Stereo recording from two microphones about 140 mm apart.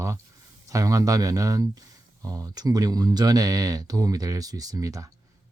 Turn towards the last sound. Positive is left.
turn(degrees=-25)  # may be behind; listen again after turning